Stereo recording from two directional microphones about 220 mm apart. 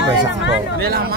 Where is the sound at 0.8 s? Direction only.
45° right (ahead or behind).